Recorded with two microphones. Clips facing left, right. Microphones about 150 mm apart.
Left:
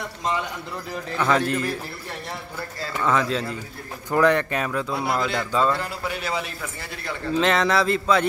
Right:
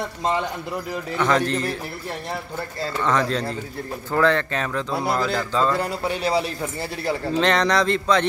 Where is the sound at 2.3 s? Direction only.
25° right (ahead or behind).